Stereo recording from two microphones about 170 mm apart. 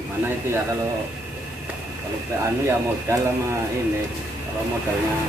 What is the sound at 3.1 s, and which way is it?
Speech, 15° right (ahead or behind).